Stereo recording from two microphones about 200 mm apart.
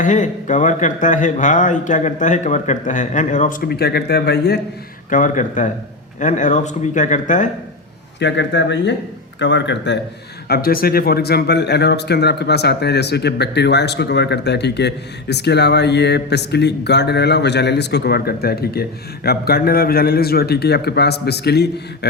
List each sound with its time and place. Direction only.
0.0 s a man's voice: 40° left (ahead or behind)
3.7 s speech: 55° left (ahead or behind)
5.1 s a man's voice: 40° left (ahead or behind)
8.2 s speech: 65° left (ahead or behind)
10.5 s speech: 45° left (ahead or behind)